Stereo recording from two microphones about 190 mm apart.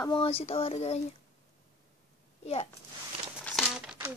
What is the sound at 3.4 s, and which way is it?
Crumpling, centre (ahead or behind).